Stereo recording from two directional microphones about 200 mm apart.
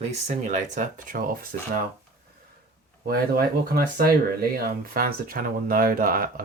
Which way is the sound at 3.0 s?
50° right (ahead or behind).